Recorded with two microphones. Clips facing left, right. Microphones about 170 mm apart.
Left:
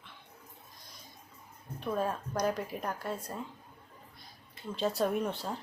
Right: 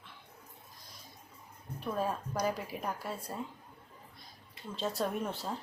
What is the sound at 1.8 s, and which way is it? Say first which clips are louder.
A woman's voice: left 2 dB; 5° right (ahead or behind).